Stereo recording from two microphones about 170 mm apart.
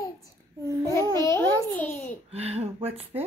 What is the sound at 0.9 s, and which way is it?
A child's voice, 20° left (ahead or behind).